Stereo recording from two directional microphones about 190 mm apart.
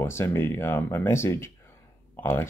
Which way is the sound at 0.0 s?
15° left (ahead or behind).